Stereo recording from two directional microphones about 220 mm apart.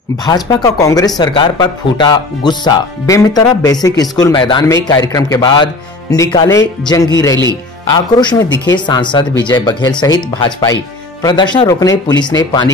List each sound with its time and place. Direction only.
0.2 s speech: 15° left (ahead or behind)